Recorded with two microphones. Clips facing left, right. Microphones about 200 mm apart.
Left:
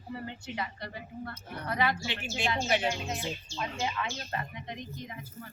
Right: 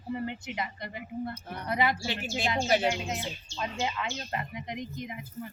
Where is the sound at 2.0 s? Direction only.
40° right (ahead or behind).